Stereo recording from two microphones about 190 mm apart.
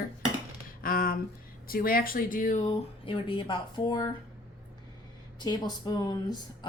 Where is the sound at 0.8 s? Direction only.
50° left (ahead or behind).